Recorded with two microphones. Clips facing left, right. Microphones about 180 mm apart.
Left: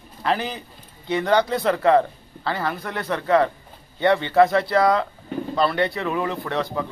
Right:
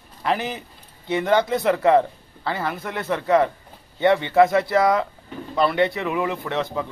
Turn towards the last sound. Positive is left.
turn(degrees=-20)  # may be behind; listen again after turning